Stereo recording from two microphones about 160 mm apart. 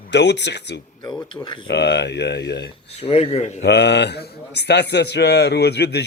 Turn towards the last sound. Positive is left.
turn(degrees=90)